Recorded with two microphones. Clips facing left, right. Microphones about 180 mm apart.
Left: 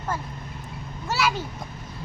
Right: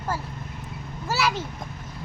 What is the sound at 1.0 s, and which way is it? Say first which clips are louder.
Speech: even; 5° right (ahead or behind).